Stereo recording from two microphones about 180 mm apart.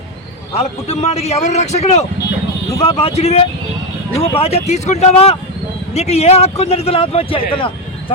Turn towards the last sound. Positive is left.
turn(degrees=30)  # may be behind; listen again after turning